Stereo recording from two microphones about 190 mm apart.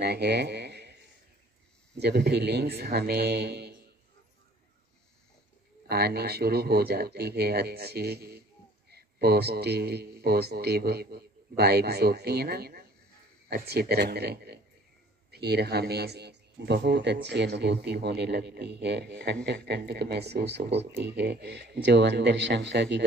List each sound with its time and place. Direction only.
0.0 s a sound: 60° right (ahead or behind)
2.0 s a man's voice: 60° right (ahead or behind)
5.9 s a man's voice: 55° right (ahead or behind)